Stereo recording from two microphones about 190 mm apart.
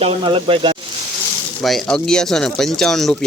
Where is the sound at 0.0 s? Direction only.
25° right (ahead or behind).